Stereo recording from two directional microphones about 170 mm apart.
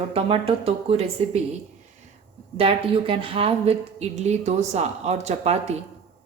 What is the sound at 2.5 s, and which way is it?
A woman's voice, 35° right (ahead or behind).